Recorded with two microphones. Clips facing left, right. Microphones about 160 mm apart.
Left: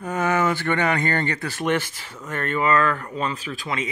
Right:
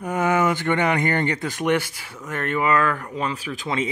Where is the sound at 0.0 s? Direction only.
15° right (ahead or behind).